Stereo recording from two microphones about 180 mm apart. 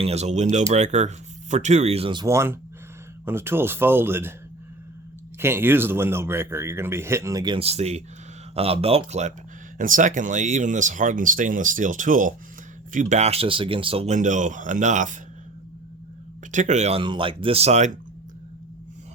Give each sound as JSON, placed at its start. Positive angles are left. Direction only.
{"t": 0.0, "sound": "speech", "side_deg": -35}
{"t": 2.2, "sound": "a man's voice", "side_deg": -15}
{"t": 5.4, "sound": "a man's voice", "side_deg": -15}
{"t": 16.5, "sound": "speech", "side_deg": -45}